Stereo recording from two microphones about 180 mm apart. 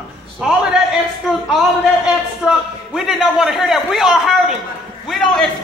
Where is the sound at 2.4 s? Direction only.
Centre (ahead or behind).